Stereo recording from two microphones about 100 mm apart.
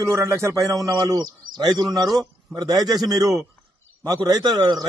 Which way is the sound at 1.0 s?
45° right (ahead or behind).